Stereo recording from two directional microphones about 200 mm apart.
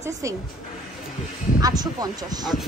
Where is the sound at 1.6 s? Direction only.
20° right (ahead or behind).